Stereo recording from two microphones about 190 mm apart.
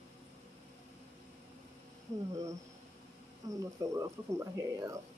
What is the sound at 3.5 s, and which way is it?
Speech, 15° right (ahead or behind).